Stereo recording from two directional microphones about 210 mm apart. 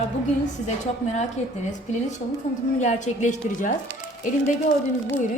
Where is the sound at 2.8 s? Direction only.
35° left (ahead or behind).